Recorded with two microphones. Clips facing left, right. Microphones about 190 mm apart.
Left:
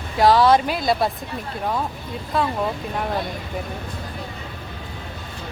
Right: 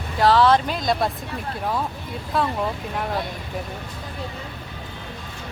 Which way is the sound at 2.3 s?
Centre (ahead or behind).